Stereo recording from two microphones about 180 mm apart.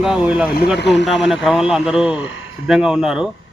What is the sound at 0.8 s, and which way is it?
Speech, 70° left (ahead or behind).